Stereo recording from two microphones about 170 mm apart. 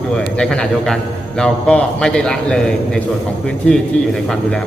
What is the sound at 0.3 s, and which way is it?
A man's voice, 5° left (ahead or behind).